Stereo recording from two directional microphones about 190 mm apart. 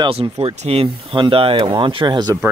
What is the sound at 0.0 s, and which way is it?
Speech, 30° right (ahead or behind).